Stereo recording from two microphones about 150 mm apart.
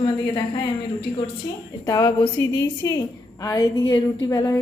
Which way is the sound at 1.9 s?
30° left (ahead or behind).